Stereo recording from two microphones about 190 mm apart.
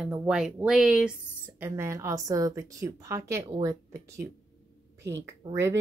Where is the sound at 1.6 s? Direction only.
15° right (ahead or behind).